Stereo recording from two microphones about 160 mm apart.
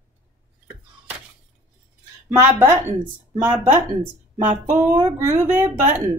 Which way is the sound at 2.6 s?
15° right (ahead or behind).